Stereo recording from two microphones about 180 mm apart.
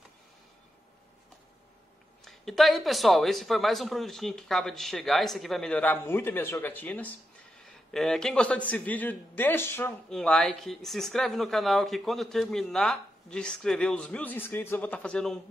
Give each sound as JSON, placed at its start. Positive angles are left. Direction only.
{"t": 2.2, "sound": "a man's voice", "side_deg": 0}